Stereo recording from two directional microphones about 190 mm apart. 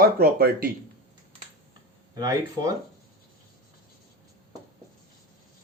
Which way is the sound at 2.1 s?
20° right (ahead or behind).